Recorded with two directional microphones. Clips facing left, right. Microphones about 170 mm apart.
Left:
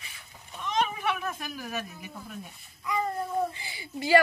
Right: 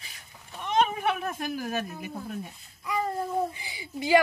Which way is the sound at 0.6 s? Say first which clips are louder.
Right 4 dB; 55° right (ahead or behind).